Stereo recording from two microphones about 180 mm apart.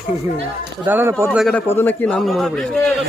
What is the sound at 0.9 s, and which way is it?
Speech, 10° right (ahead or behind).